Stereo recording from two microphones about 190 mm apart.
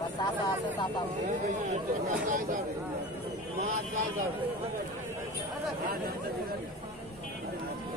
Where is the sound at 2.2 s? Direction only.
45° right (ahead or behind).